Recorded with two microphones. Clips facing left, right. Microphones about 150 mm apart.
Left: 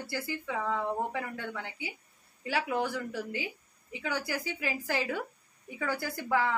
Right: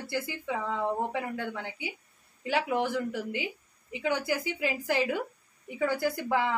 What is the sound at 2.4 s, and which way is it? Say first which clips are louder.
A woman's voice: right 3 dB; 20° right (ahead or behind).